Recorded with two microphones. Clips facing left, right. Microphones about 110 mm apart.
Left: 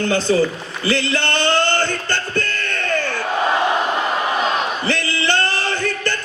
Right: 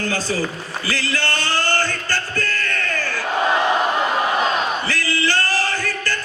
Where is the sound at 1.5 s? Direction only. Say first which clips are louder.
Left 3 dB; 25° left (ahead or behind).